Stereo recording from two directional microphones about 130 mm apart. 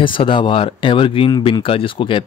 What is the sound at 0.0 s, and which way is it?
Speech, 40° left (ahead or behind).